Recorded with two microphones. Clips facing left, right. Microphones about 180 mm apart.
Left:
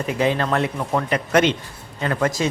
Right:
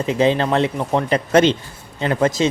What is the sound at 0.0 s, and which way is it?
Speech, 25° right (ahead or behind).